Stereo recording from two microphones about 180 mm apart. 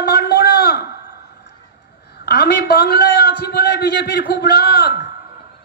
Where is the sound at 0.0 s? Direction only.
60° left (ahead or behind).